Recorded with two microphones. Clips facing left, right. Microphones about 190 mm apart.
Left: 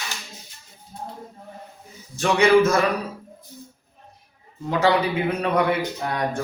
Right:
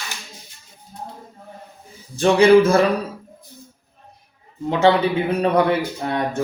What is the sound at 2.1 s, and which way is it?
Speech, 30° right (ahead or behind).